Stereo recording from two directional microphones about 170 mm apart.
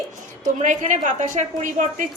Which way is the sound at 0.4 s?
50° right (ahead or behind).